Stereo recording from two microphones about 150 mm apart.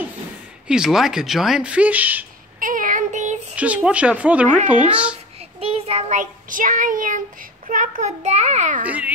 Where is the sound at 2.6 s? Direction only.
65° right (ahead or behind).